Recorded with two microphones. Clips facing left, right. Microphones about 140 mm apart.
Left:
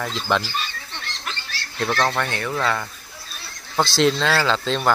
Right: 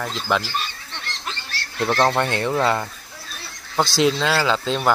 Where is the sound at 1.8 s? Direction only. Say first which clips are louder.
Right 3 dB; 20° right (ahead or behind).